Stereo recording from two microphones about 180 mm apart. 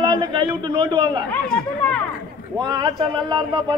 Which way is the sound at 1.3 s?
5° left (ahead or behind).